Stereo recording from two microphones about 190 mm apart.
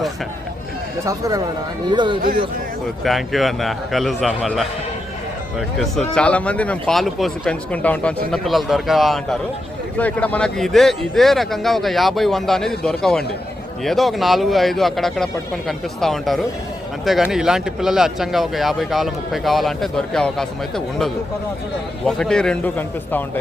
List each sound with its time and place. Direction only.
1.0 s speech: 15° right (ahead or behind)
3.0 s speech: centre (ahead or behind)